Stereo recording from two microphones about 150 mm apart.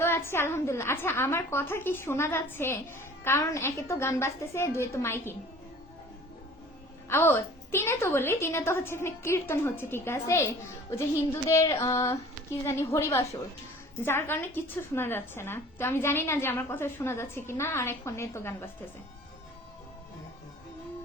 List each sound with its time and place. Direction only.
0.0 s a woman's voice: 15° left (ahead or behind)
7.1 s a woman's voice: 15° left (ahead or behind)
11.4 s female singing: 20° left (ahead or behind)
14.0 s a woman's voice: 15° left (ahead or behind)